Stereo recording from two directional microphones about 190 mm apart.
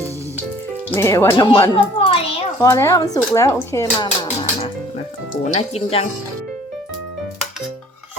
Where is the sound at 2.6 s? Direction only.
15° left (ahead or behind); by 6.1 s 30° left (ahead or behind).